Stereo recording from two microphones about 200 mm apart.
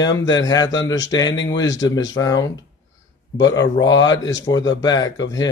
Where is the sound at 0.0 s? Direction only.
20° left (ahead or behind).